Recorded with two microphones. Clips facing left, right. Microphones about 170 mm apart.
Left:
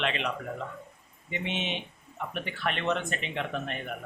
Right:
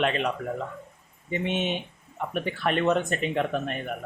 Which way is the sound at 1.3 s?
45° right (ahead or behind).